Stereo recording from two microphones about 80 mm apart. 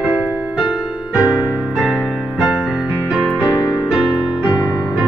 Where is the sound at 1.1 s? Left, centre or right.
Centre.